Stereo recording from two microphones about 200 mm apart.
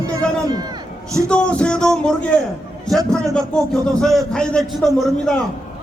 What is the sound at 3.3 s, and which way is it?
A man's voice, 5° left (ahead or behind).